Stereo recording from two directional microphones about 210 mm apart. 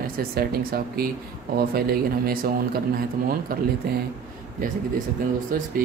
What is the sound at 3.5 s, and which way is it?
Speech, 45° right (ahead or behind).